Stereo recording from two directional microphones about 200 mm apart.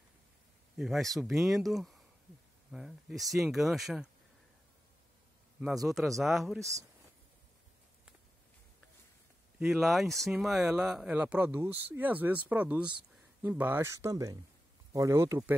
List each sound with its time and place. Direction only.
0.7 s speech: centre (ahead or behind)
5.6 s speech: centre (ahead or behind)
6.6 s speech: 15° right (ahead or behind)
9.6 s speech: centre (ahead or behind)